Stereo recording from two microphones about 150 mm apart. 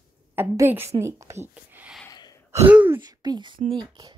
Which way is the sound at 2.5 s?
15° right (ahead or behind).